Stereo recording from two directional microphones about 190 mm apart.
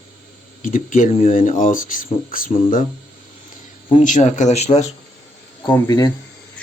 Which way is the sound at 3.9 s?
40° left (ahead or behind).